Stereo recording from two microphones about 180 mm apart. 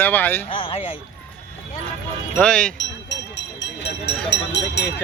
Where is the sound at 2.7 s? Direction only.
80° left.